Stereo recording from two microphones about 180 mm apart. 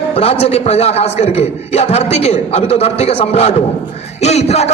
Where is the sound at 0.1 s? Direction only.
35° left (ahead or behind).